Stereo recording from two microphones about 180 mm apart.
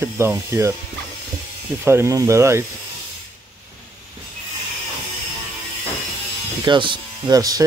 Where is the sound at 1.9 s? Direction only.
15° right (ahead or behind).